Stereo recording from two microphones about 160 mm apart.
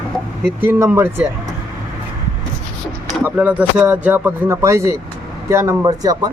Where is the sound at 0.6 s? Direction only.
10° right (ahead or behind).